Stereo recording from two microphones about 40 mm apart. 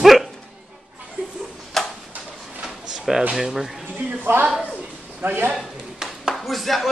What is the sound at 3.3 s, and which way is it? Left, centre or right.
Speech, centre.